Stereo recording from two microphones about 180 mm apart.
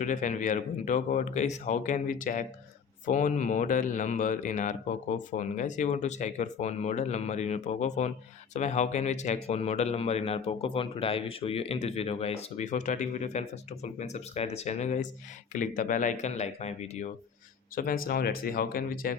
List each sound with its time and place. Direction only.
0.0 s speech: 45° left (ahead or behind)
17.7 s speech: 55° left (ahead or behind)